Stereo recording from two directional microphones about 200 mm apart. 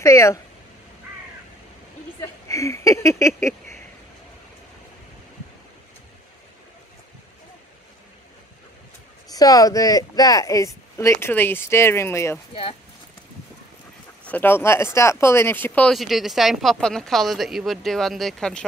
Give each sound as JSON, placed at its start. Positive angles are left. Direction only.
{"t": 0.0, "sound": "speech", "side_deg": 15}
{"t": 2.1, "sound": "speech", "side_deg": 15}
{"t": 9.3, "sound": "speech", "side_deg": 20}
{"t": 14.2, "sound": "speech", "side_deg": 10}